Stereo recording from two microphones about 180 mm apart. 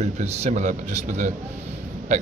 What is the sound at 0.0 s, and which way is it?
A man's voice, 35° right (ahead or behind).